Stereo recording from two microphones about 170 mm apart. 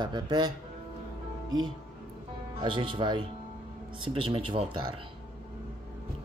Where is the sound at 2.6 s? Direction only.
30° right (ahead or behind).